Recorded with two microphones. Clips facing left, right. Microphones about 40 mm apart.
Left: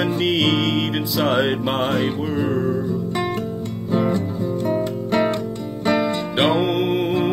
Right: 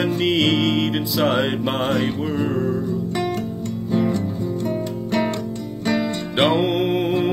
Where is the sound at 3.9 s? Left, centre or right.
Centre.